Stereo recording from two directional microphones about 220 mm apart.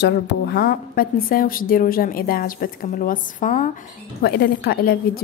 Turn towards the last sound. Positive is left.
turn(degrees=45)  # may be behind; listen again after turning